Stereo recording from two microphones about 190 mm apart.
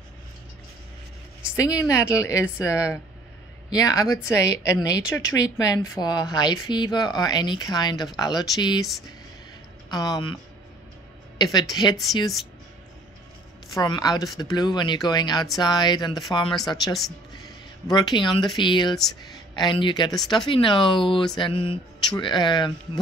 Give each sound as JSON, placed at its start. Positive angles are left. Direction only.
{"t": 1.5, "sound": "a woman's voice", "side_deg": 15}
{"t": 9.8, "sound": "a woman's voice", "side_deg": 20}
{"t": 13.7, "sound": "speech", "side_deg": 20}
{"t": 17.3, "sound": "a sound", "side_deg": 20}
{"t": 18.6, "sound": "speech", "side_deg": 25}